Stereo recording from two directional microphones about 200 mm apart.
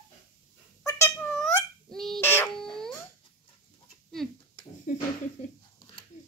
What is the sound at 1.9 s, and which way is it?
Fowl, centre (ahead or behind).